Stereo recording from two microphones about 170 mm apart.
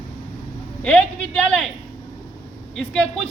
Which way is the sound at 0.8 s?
5° left (ahead or behind).